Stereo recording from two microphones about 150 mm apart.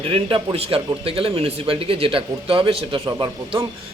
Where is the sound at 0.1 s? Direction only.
35° right (ahead or behind).